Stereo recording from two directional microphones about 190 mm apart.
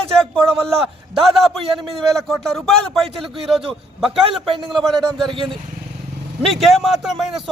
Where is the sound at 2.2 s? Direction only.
Centre (ahead or behind).